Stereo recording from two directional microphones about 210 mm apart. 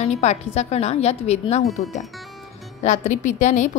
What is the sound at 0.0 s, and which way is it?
A woman's voice, 30° left (ahead or behind).